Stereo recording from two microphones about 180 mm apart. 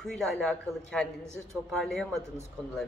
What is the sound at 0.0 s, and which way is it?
Speech, 5° left (ahead or behind).